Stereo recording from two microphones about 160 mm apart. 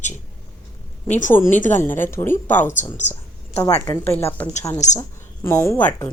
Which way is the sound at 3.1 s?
15° left (ahead or behind).